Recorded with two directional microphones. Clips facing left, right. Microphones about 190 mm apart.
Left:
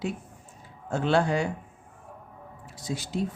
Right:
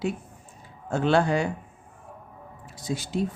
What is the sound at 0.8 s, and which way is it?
Speech, 60° right (ahead or behind).